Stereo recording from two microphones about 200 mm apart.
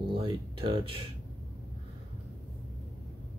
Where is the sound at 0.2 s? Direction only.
25° right (ahead or behind).